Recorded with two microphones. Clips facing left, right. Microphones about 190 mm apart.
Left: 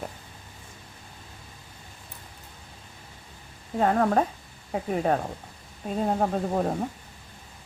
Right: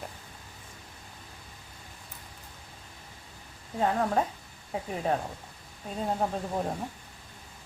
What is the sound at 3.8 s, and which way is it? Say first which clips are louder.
Speech: left 5 dB; 65° left (ahead or behind).